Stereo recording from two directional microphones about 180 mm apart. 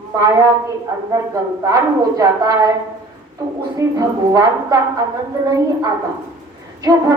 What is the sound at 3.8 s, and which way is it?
A woman's voice, 15° right (ahead or behind).